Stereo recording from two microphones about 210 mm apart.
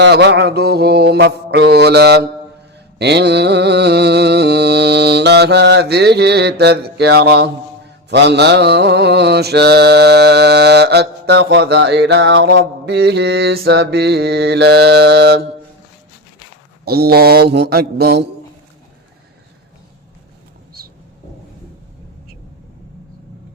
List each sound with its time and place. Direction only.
0.0 s mantra: 55° right (ahead or behind)
16.8 s mantra: 45° right (ahead or behind)